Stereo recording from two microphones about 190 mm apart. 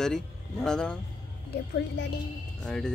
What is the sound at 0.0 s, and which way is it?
Speech, 5° left (ahead or behind).